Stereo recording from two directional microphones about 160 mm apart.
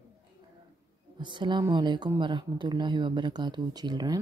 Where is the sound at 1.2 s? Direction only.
30° right (ahead or behind).